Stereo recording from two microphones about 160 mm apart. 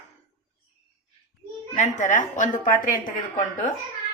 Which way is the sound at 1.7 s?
50° left (ahead or behind).